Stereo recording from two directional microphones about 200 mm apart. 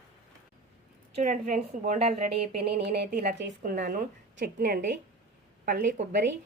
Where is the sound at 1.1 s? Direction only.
40° right (ahead or behind).